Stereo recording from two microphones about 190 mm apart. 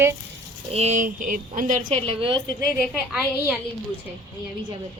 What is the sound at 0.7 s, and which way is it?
Speech, 35° right (ahead or behind).